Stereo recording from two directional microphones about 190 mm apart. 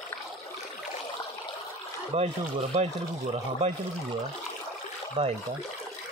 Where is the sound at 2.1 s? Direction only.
35° right (ahead or behind).